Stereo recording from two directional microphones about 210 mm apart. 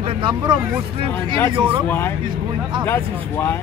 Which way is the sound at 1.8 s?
10° left (ahead or behind).